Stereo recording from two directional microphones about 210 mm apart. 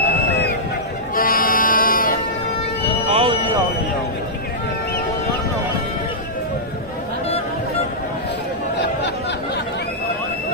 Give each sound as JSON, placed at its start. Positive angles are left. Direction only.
{"t": 1.1, "sound": "music", "side_deg": 40}
{"t": 3.1, "sound": "music", "side_deg": -25}